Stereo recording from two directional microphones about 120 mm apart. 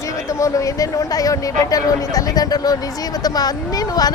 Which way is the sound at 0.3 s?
25° left (ahead or behind).